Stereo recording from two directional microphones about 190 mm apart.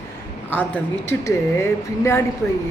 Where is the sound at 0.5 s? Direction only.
10° left (ahead or behind).